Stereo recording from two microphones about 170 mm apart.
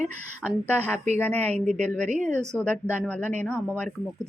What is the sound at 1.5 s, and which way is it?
Speech, 40° right (ahead or behind).